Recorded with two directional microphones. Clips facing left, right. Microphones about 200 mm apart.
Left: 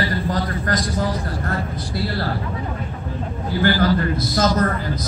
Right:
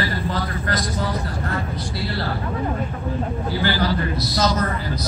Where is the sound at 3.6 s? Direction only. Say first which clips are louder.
Left 5 dB; 50° left (ahead or behind).